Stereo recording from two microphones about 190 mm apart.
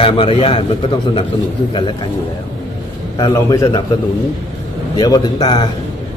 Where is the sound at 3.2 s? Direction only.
20° left (ahead or behind).